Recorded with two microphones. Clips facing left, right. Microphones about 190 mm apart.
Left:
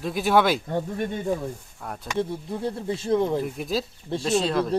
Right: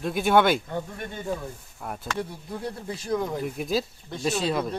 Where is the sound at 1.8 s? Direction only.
5° right (ahead or behind).